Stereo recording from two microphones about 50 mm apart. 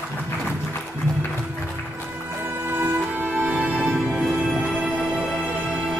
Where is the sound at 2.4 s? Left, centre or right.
Right.